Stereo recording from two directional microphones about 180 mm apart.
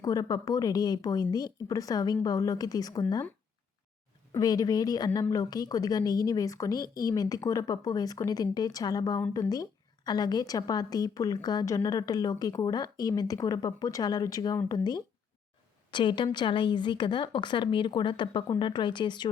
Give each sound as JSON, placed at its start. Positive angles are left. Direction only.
{"t": 0.0, "sound": "a woman's voice", "side_deg": 20}
{"t": 4.4, "sound": "a woman's voice", "side_deg": 20}